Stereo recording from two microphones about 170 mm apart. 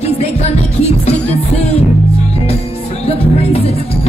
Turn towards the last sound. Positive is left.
turn(degrees=40)  # may be behind; listen again after turning